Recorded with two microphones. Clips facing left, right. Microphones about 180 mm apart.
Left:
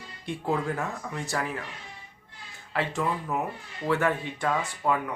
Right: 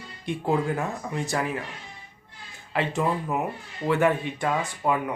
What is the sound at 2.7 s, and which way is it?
Speech, 20° right (ahead or behind).